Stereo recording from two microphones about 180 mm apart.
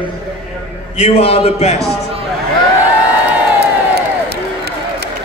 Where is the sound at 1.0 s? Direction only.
35° left (ahead or behind).